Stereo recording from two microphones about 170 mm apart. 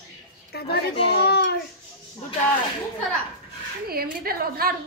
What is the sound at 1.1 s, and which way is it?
Speech, 75° left (ahead or behind).